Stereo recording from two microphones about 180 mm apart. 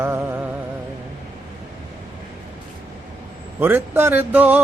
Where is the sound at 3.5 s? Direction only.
10° right (ahead or behind).